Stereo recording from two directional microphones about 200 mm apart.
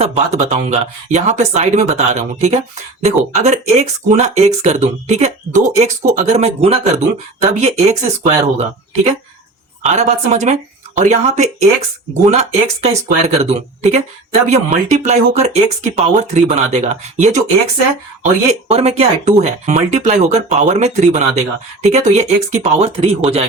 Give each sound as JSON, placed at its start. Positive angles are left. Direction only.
{"t": 0.0, "sound": "speech", "side_deg": -30}
{"t": 9.8, "sound": "speech", "side_deg": -35}
{"t": 18.7, "sound": "speech", "side_deg": -30}